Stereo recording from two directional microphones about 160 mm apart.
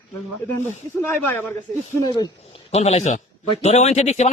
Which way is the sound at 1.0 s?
10° left (ahead or behind).